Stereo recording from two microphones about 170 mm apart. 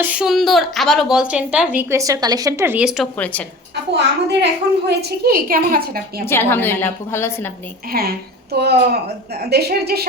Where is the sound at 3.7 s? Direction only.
85° right; by 6.2 s 65° right (ahead or behind).